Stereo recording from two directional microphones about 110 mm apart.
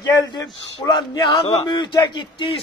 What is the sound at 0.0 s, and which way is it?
A man's voice, 35° left (ahead or behind).